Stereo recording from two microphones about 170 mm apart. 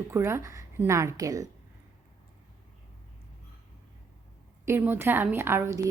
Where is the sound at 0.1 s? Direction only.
15° right (ahead or behind).